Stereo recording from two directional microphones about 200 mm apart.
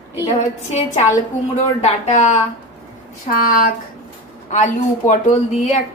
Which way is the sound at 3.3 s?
45° left (ahead or behind).